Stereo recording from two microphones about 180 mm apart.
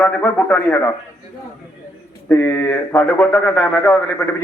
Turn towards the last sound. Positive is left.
turn(degrees=15)  # may be behind; listen again after turning